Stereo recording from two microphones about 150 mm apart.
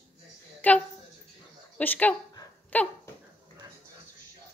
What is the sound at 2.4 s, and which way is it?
Dog, 25° left (ahead or behind).